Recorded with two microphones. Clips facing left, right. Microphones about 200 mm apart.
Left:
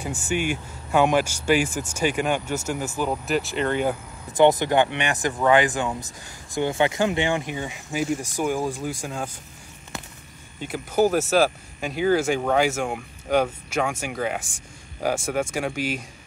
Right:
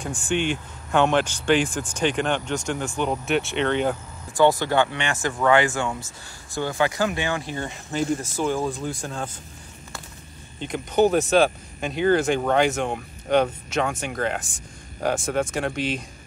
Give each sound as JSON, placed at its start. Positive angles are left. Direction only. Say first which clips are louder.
{"t": 0.0, "sound": "speech", "louder": "right 1 dB", "side_deg": 5}
{"t": 4.3, "sound": "speech", "louder": "left 1 dB", "side_deg": 20}
{"t": 7.5, "sound": "speech", "louder": "right 1 dB", "side_deg": 10}
{"t": 10.6, "sound": "speech", "louder": "right 1 dB", "side_deg": 5}